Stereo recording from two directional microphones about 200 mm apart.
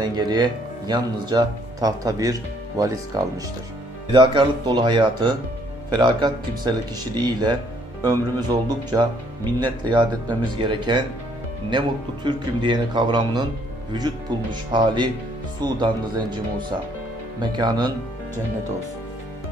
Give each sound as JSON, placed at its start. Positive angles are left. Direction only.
{"t": 0.0, "sound": "a man's voice", "side_deg": -20}
{"t": 8.0, "sound": "a man's voice", "side_deg": -20}